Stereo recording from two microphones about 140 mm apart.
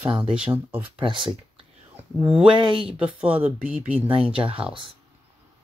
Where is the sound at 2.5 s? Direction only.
40° right (ahead or behind).